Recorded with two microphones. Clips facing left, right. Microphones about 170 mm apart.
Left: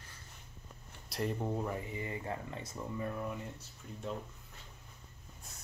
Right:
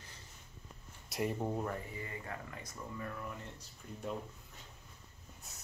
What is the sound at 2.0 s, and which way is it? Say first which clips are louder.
Speech: left 5 dB; 25° left (ahead or behind).